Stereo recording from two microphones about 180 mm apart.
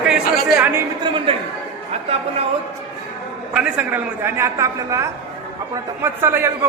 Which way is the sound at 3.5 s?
10° right (ahead or behind).